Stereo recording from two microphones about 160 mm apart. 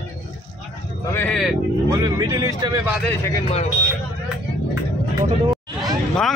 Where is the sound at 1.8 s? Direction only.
20° right (ahead or behind).